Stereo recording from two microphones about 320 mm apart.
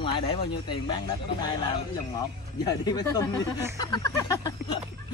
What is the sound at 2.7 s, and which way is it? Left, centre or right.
Speech, centre.